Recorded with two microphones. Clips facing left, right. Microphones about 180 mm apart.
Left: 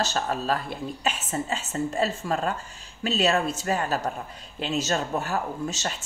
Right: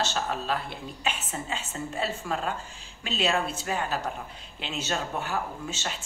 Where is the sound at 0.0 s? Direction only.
40° left (ahead or behind).